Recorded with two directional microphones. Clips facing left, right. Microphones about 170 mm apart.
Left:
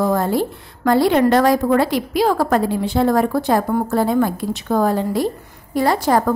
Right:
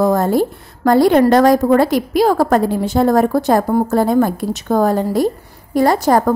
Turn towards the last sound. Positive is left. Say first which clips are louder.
# right 3 dB
turn(degrees=-40)  # may be behind; listen again after turning